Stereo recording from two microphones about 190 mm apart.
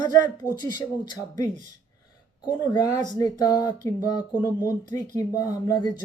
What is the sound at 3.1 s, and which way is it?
Speech, 20° left (ahead or behind).